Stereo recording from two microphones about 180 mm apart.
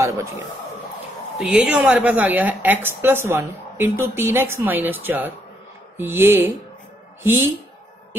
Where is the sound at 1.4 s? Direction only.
5° right (ahead or behind).